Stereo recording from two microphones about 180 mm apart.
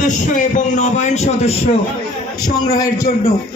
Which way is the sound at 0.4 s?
45° left (ahead or behind).